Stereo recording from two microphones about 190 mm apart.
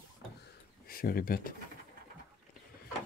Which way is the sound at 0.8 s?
50° left (ahead or behind).